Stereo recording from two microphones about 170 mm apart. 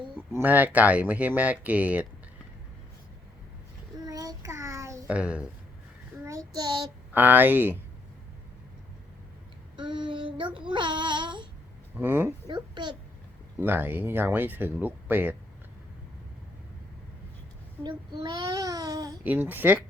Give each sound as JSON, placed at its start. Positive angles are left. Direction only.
{"t": 0.3, "sound": "speech", "side_deg": -10}
{"t": 4.0, "sound": "child singing", "side_deg": -20}
{"t": 6.2, "sound": "child singing", "side_deg": -20}
{"t": 7.1, "sound": "speech", "side_deg": -10}
{"t": 9.7, "sound": "child singing", "side_deg": -30}
{"t": 11.9, "sound": "speech", "side_deg": -10}
{"t": 12.5, "sound": "a child's voice", "side_deg": -25}
{"t": 13.6, "sound": "speech", "side_deg": -10}
{"t": 17.8, "sound": "a child's voice", "side_deg": -25}
{"t": 19.2, "sound": "speech", "side_deg": -10}